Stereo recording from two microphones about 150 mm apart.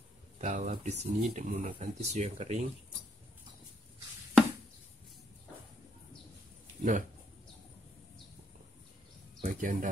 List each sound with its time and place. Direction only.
0.4 s speech: 55° right (ahead or behind)
6.8 s speech: 60° right (ahead or behind)
9.4 s speech: 60° right (ahead or behind)